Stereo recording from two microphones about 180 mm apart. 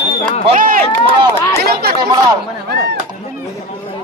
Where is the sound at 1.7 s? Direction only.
60° right (ahead or behind).